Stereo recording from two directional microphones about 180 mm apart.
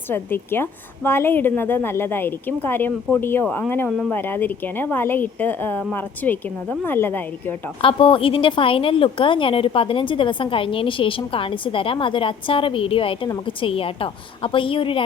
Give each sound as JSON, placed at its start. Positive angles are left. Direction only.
{"t": 0.1, "sound": "a woman's voice", "side_deg": 10}
{"t": 7.8, "sound": "a woman's voice", "side_deg": 30}